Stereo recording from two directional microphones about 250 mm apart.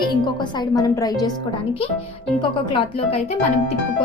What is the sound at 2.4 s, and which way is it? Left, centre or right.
A woman's voice, left.